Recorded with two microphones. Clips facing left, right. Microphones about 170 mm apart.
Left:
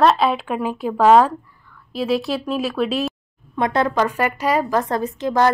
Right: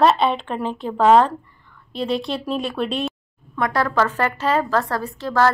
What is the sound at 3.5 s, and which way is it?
A woman's voice, 20° left (ahead or behind).